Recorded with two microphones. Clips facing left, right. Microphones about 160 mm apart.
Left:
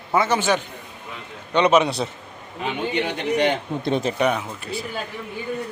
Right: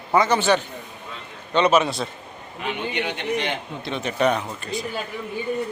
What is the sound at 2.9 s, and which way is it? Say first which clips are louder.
A man's voice: left 6 dB; 40° left (ahead or behind).